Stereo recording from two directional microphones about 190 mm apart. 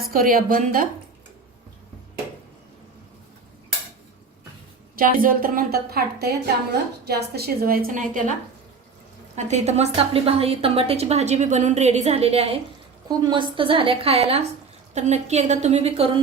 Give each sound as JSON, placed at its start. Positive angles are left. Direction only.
{"t": 0.1, "sound": "a woman's voice", "side_deg": -45}
{"t": 4.9, "sound": "a woman's voice", "side_deg": -50}
{"t": 9.3, "sound": "a woman's voice", "side_deg": -35}